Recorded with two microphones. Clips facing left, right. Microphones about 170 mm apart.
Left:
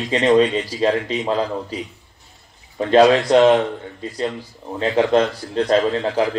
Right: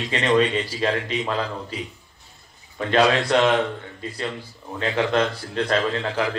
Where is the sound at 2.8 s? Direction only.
35° left (ahead or behind).